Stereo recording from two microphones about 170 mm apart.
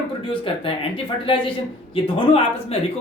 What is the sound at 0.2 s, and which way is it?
A woman's voice, 30° left (ahead or behind).